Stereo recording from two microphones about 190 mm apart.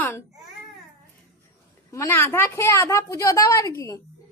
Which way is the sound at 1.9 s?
15° left (ahead or behind).